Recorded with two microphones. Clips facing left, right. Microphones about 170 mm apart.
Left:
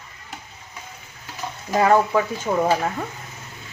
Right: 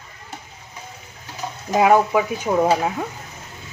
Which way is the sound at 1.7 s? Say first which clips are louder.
Right 2 dB; 10° right (ahead or behind).